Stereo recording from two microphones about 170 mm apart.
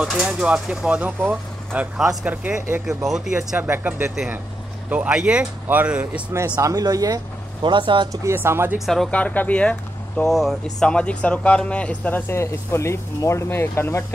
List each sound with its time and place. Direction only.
0.0 s speech: 5° right (ahead or behind)
6.4 s speech: 20° right (ahead or behind)
8.7 s speech: centre (ahead or behind)